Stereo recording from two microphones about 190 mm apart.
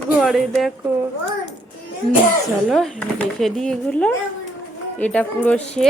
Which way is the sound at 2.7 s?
5° left (ahead or behind).